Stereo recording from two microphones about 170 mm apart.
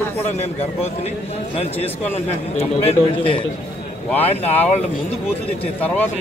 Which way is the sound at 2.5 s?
35° left (ahead or behind).